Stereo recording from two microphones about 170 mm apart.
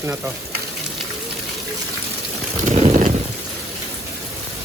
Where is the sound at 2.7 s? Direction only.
40° right (ahead or behind).